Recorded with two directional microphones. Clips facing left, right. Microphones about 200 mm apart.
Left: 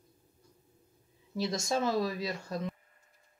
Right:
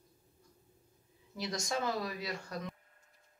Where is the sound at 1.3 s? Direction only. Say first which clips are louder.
Left 5 dB; 25° left (ahead or behind).